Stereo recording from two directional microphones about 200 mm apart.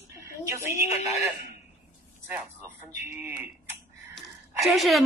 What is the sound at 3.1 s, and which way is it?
Speech, 10° right (ahead or behind).